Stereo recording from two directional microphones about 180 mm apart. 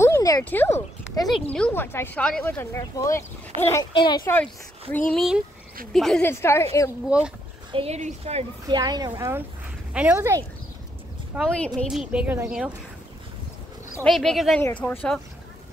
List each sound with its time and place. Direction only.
0.0 s speech: 15° left (ahead or behind)
1.3 s speech: 5° left (ahead or behind); by 4.3 s 25° left (ahead or behind)
4.9 s a woman's voice: 5° left (ahead or behind)
6.2 s speech: 15° left (ahead or behind)
7.1 s a woman's voice: 5° right (ahead or behind)
7.7 s a woman's voice: 35° right (ahead or behind)
8.6 s speech: 20° right (ahead or behind)
9.9 s speech: 10° right (ahead or behind)
11.3 s a woman's voice: centre (ahead or behind)
14.0 s a woman's voice: centre (ahead or behind)